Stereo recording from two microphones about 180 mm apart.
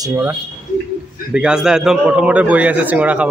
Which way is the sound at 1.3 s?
5° right (ahead or behind).